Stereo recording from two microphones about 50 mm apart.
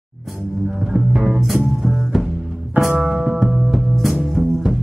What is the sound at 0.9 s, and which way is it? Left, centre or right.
Music, centre.